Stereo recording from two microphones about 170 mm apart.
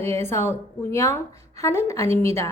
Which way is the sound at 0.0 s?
15° left (ahead or behind).